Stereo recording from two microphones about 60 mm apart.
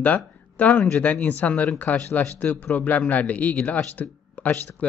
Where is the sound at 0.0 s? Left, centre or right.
Left.